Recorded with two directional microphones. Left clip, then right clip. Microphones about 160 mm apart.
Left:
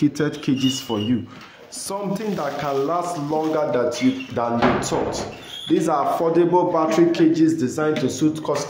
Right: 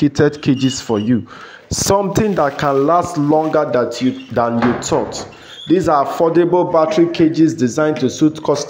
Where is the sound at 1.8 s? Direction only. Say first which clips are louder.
Right 12 dB; 65° right (ahead or behind).